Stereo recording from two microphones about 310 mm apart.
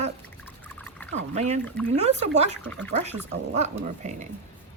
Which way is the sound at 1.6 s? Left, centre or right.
Centre.